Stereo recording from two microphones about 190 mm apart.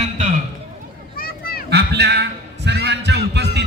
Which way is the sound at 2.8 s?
65° right (ahead or behind).